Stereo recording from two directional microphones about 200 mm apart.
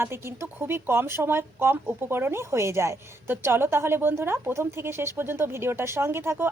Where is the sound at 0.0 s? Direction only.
10° right (ahead or behind).